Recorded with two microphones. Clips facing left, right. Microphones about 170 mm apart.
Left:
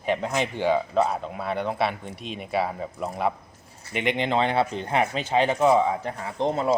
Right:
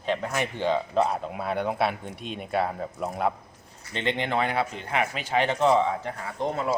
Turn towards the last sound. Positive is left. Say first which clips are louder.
# left 4 dB
turn(degrees=25)  # may be behind; listen again after turning